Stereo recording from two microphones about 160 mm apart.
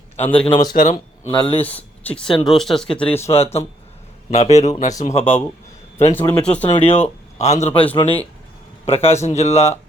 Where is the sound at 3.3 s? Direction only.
40° left (ahead or behind).